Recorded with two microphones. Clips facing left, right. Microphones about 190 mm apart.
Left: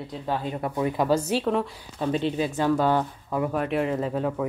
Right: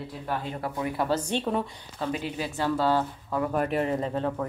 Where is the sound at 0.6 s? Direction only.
20° left (ahead or behind); by 1.7 s centre (ahead or behind).